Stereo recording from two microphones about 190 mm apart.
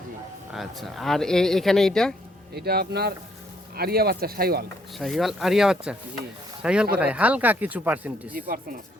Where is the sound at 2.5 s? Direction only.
55° right (ahead or behind).